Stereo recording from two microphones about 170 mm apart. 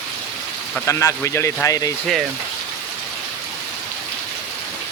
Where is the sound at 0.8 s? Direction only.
15° left (ahead or behind).